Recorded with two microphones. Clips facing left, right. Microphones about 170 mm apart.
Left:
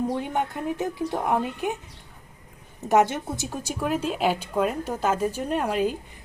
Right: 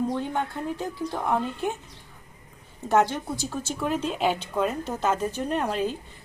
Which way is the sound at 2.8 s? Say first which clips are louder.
Left 2 dB; 20° left (ahead or behind).